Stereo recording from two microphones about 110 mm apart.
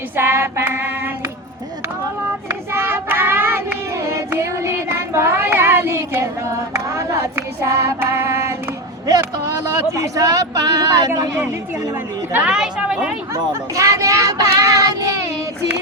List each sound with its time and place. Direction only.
0.2 s child singing: 20° right (ahead or behind)
2.5 s child singing: 20° right (ahead or behind)
9.0 s speech: 30° right (ahead or behind)
12.3 s a woman's voice: 10° right (ahead or behind)
13.3 s child singing: 30° right (ahead or behind)